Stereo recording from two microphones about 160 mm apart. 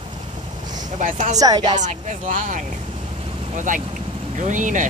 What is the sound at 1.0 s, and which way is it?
Speech, 50° right (ahead or behind).